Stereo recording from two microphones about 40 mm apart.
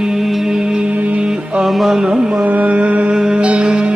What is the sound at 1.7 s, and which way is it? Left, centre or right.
Music, centre.